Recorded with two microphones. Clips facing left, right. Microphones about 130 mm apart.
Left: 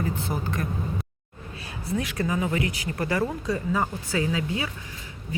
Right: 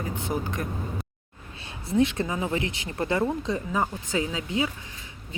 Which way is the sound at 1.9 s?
25° right (ahead or behind).